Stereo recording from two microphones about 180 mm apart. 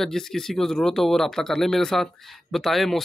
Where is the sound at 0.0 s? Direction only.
Centre (ahead or behind).